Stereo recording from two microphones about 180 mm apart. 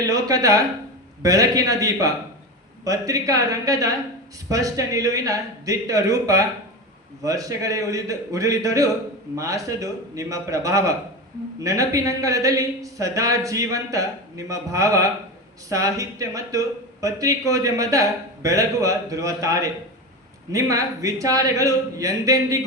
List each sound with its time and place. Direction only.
0.0 s speech: 20° right (ahead or behind)